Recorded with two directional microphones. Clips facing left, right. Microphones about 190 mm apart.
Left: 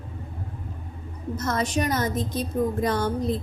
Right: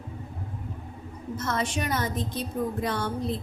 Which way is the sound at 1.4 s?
40° left (ahead or behind).